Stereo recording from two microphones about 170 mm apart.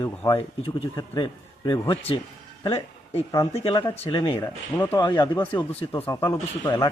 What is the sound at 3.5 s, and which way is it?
Speech, 30° left (ahead or behind).